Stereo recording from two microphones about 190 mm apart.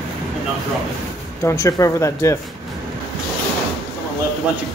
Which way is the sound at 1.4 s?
15° left (ahead or behind).